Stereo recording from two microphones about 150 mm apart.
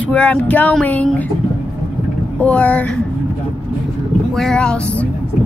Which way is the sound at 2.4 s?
10° left (ahead or behind).